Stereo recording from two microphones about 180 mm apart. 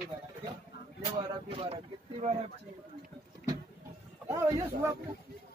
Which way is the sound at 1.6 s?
35° right (ahead or behind).